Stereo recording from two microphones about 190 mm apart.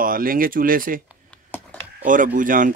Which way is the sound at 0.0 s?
50° right (ahead or behind).